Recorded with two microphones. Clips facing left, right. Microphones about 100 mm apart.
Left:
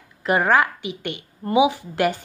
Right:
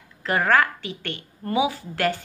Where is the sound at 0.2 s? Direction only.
15° left (ahead or behind).